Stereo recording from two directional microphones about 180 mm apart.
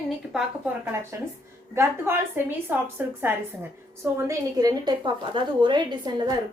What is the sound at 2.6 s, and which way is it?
A woman's voice, 10° right (ahead or behind).